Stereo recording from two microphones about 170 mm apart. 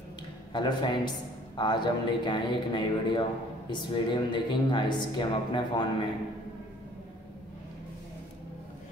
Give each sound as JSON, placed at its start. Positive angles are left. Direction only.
{"t": 0.5, "sound": "speech", "side_deg": 25}